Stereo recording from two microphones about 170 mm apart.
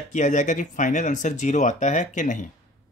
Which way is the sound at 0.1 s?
45° left (ahead or behind).